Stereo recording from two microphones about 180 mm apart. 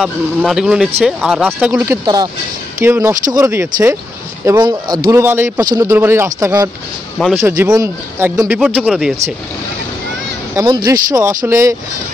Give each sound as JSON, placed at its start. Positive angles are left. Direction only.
{"t": 0.0, "sound": "speech", "side_deg": 0}
{"t": 10.5, "sound": "speech", "side_deg": -20}